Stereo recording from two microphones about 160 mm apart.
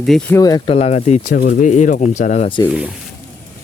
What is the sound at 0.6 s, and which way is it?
Speech, 40° left (ahead or behind).